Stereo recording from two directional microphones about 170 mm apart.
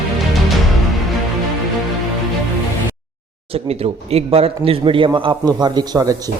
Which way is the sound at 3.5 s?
35° right (ahead or behind).